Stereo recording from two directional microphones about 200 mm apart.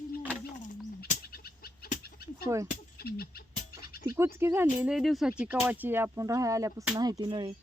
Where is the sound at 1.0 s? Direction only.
50° left (ahead or behind).